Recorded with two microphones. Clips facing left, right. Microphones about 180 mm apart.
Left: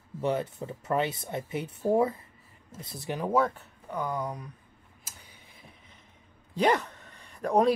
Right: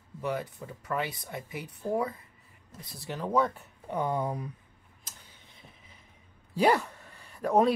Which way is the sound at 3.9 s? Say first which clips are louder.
Right 2 dB; 25° right (ahead or behind).